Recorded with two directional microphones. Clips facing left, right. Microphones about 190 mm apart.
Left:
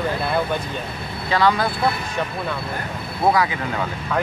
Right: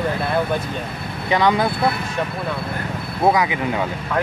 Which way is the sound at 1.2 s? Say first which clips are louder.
Right 1 dB; 20° right (ahead or behind).